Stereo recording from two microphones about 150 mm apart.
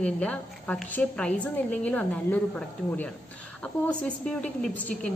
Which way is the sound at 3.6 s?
5° left (ahead or behind).